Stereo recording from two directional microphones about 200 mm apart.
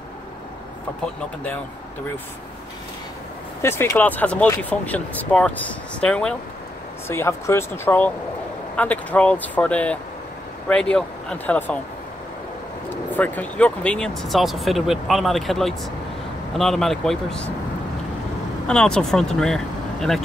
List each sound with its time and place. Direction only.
3.6 s speech: 10° left (ahead or behind)
12.9 s speech: 10° left (ahead or behind)
18.7 s speech: 5° left (ahead or behind)